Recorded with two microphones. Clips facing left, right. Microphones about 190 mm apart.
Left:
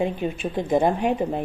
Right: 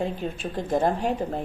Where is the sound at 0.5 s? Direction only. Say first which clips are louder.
Left 3 dB; 15° left (ahead or behind).